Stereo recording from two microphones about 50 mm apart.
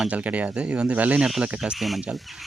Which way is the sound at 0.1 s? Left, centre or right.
Right.